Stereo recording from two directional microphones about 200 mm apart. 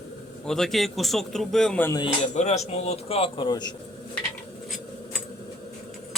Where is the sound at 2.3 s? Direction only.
35° left (ahead or behind).